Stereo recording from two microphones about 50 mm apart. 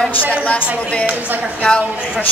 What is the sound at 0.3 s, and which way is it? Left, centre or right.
Speech, left.